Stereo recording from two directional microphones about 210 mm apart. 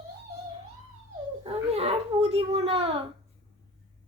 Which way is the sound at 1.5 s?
30° right (ahead or behind).